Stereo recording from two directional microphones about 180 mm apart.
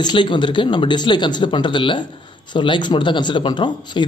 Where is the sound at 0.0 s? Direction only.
25° left (ahead or behind).